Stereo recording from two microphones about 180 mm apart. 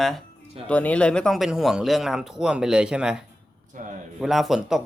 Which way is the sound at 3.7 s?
45° right (ahead or behind).